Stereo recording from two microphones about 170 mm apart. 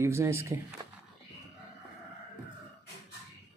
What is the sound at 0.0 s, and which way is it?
Speech, 15° right (ahead or behind).